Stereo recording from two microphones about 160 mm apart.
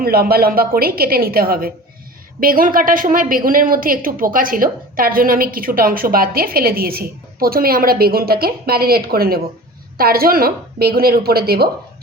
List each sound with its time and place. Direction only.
0.0 s a woman's voice: 70° right (ahead or behind)